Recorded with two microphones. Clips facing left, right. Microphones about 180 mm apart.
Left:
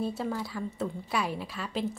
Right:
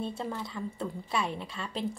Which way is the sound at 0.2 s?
5° left (ahead or behind).